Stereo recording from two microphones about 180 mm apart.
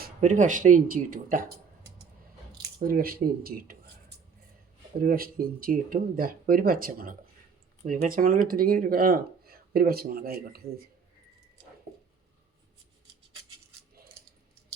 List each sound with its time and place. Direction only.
0.0 s speech: 40° right (ahead or behind)
2.8 s speech: 55° right (ahead or behind)
5.0 s speech: 55° right (ahead or behind)